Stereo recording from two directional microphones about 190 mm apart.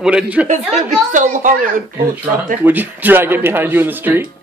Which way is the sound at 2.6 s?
10° right (ahead or behind).